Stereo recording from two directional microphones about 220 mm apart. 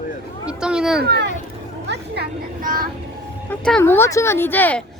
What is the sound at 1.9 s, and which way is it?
Vehicle, 50° right (ahead or behind).